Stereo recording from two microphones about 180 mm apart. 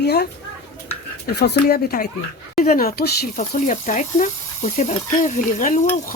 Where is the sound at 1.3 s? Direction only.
60° left (ahead or behind).